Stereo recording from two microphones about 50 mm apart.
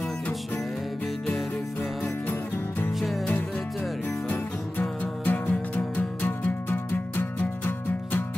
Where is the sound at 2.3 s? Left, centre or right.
Left.